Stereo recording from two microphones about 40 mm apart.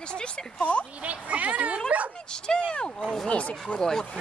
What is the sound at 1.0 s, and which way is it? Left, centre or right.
Speech, right.